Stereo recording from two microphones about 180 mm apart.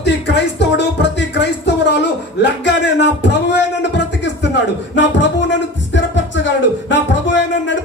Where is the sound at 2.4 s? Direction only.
75° left (ahead or behind).